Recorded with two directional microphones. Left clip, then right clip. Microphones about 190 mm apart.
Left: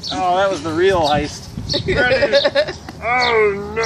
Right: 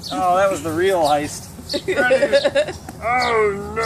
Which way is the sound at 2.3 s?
50° right (ahead or behind).